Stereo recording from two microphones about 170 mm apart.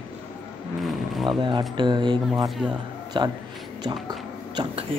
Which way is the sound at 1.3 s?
25° right (ahead or behind).